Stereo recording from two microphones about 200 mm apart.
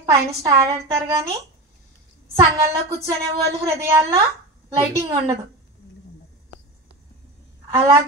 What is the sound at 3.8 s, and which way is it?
Speech, 15° right (ahead or behind).